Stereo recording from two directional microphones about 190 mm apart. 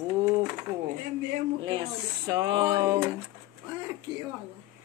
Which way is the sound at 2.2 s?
20° right (ahead or behind).